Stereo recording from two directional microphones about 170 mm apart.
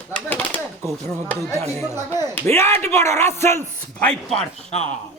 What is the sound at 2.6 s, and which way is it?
Speech, 15° left (ahead or behind).